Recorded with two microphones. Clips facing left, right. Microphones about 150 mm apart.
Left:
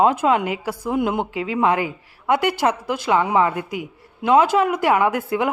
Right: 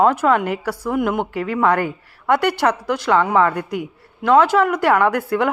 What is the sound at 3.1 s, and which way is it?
Speech, 15° left (ahead or behind).